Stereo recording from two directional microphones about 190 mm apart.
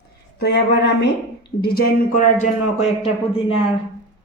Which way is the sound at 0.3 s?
60° left (ahead or behind).